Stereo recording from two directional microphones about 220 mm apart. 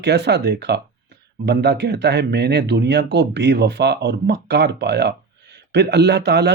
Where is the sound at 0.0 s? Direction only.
50° right (ahead or behind).